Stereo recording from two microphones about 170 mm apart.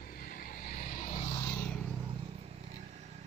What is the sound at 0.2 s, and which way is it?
Vehicle, 55° left (ahead or behind).